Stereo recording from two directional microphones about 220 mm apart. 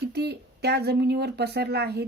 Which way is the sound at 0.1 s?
50° right (ahead or behind).